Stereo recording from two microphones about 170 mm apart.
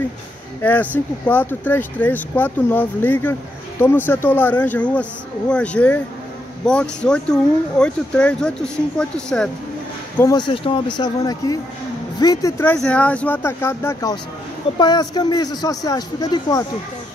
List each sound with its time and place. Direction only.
0.6 s speech: 10° left (ahead or behind)
10.1 s speech: 20° left (ahead or behind)
12.7 s speech: 5° left (ahead or behind); by 16.6 s 20° left (ahead or behind)